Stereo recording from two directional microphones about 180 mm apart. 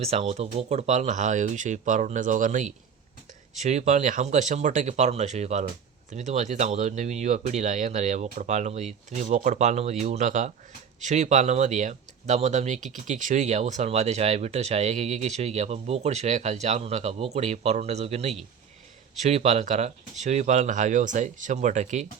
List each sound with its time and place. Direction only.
0.0 s speech: 35° right (ahead or behind)